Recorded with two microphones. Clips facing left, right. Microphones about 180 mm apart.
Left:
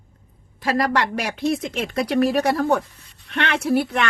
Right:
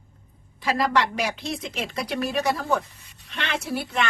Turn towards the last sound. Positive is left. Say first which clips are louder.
# left 7 dB
turn(degrees=60)  # may be behind; listen again after turning